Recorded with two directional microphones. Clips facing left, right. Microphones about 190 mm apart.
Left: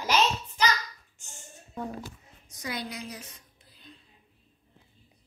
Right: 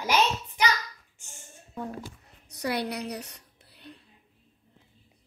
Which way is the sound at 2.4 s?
65° right (ahead or behind).